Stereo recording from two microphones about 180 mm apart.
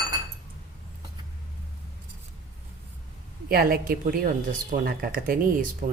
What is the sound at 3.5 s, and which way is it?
Speech, 55° right (ahead or behind).